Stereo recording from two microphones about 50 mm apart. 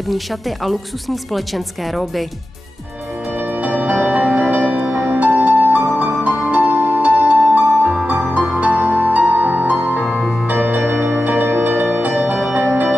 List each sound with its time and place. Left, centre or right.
1.3 s a woman's voice: centre
3.6 s music: right